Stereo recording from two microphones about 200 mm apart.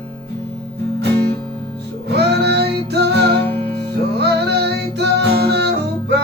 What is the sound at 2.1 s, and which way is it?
Music, 55° right (ahead or behind).